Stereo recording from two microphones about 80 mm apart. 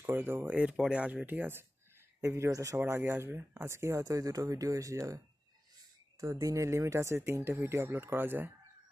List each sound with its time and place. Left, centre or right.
0.0 s speech: right
0.5 s speech: centre
2.2 s speech: right
2.8 s speech: right
6.2 s speech: right